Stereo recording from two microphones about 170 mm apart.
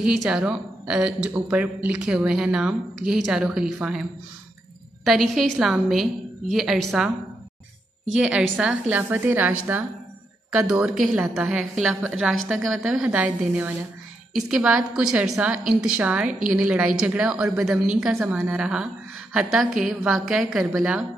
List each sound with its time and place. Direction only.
0.0 s speech: 5° right (ahead or behind)
5.0 s speech: centre (ahead or behind)
8.1 s a woman's voice: 5° right (ahead or behind)
16.3 s a woman's voice: 50° right (ahead or behind)
16.5 s speech: 5° right (ahead or behind)